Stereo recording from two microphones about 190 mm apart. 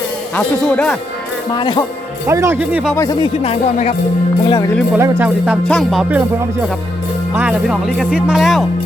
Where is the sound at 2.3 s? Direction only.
15° right (ahead or behind).